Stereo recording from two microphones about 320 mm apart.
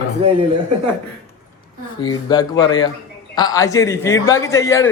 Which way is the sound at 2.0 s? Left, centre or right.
Centre.